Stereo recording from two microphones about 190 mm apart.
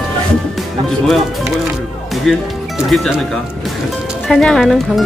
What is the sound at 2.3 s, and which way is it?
Speech, 5° left (ahead or behind).